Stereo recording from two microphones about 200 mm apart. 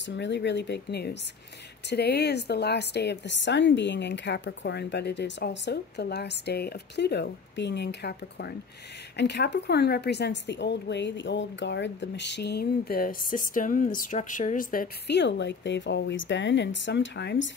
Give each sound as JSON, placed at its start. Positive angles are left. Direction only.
{"t": 0.0, "sound": "a woman's voice", "side_deg": 60}